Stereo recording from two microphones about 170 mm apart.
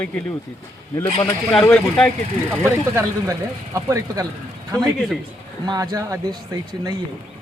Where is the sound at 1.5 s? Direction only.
5° left (ahead or behind).